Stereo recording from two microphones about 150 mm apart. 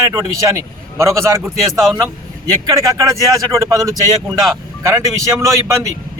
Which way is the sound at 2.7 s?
20° right (ahead or behind).